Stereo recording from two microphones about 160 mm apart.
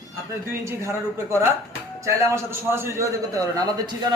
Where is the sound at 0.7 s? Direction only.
15° right (ahead or behind).